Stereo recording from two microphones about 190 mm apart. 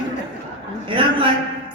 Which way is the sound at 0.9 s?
25° right (ahead or behind).